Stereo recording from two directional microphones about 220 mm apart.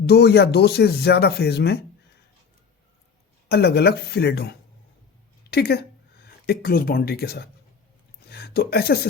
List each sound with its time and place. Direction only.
0.1 s speech: 50° left (ahead or behind)
3.5 s a woman's voice: 45° left (ahead or behind)
8.3 s a sound: 45° left (ahead or behind)